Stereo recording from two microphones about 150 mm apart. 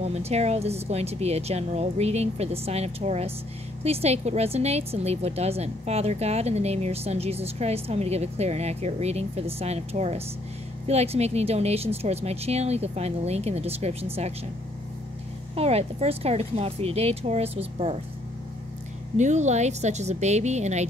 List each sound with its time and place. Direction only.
0.0 s a woman's voice: 45° right (ahead or behind)
15.5 s a woman's voice: 45° right (ahead or behind)
19.1 s a woman's voice: 50° right (ahead or behind)